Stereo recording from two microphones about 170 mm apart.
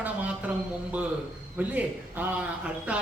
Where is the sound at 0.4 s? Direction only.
10° right (ahead or behind).